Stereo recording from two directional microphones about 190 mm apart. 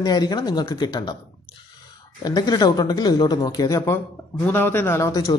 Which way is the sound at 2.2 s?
20° left (ahead or behind).